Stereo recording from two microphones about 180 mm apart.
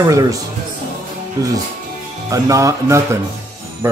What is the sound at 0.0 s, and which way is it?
Speech, 20° right (ahead or behind).